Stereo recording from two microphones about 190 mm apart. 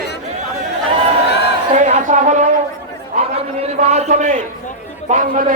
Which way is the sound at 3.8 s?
35° right (ahead or behind).